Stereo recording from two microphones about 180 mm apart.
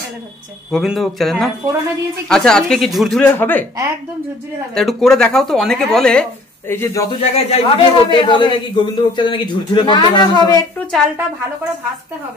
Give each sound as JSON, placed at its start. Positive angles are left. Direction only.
{"t": 0.7, "sound": "speech", "side_deg": 0}
{"t": 3.3, "sound": "speech", "side_deg": 10}
{"t": 4.7, "sound": "speech", "side_deg": 0}
{"t": 6.7, "sound": "speech", "side_deg": 15}
{"t": 7.2, "sound": "a man's voice", "side_deg": 35}